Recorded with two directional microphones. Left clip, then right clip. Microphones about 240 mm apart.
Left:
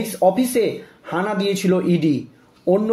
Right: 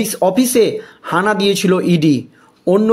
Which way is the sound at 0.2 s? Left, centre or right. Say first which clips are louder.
Right 4 dB; right.